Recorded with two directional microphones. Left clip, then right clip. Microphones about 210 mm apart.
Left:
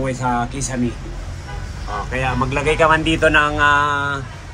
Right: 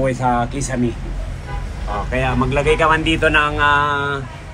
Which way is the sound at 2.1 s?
15° left (ahead or behind).